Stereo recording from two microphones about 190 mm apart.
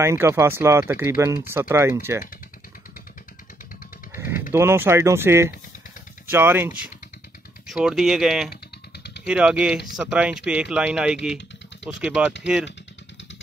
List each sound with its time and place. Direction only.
0.0 s speech: 15° right (ahead or behind)
4.2 s speech: 10° right (ahead or behind)
8.9 s a sound: 60° left (ahead or behind)
9.2 s speech: 5° right (ahead or behind)